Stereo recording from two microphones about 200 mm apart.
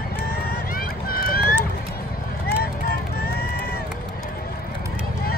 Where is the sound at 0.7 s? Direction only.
45° left (ahead or behind).